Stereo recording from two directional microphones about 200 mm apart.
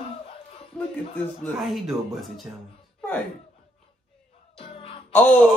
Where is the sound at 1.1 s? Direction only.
5° left (ahead or behind).